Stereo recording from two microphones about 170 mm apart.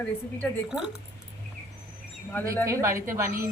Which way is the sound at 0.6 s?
5° right (ahead or behind).